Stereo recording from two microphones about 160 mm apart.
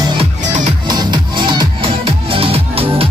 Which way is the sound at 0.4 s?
50° right (ahead or behind).